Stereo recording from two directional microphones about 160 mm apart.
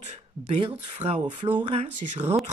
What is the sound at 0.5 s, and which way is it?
Speech, 35° right (ahead or behind).